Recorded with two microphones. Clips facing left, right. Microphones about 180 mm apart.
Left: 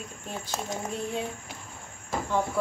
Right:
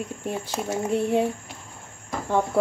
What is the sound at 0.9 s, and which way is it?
Speech, 65° right (ahead or behind).